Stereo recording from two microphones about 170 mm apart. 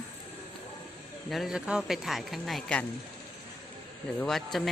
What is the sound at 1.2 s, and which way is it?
A woman's voice, centre (ahead or behind).